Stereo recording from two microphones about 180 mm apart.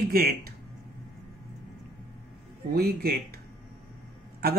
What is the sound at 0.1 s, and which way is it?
Speech, 55° right (ahead or behind).